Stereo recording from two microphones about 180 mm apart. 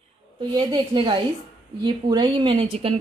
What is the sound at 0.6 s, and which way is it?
A woman's voice, 25° right (ahead or behind).